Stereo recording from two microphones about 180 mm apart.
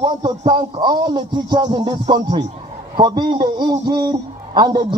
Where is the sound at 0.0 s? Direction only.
30° right (ahead or behind).